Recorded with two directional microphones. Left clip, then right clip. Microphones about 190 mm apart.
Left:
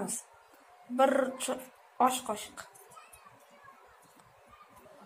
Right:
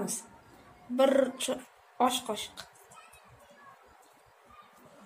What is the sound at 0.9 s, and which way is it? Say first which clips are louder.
Speech: right 2 dB; 15° right (ahead or behind).